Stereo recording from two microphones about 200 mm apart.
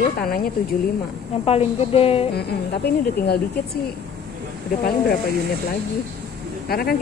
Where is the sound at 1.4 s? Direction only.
30° left (ahead or behind).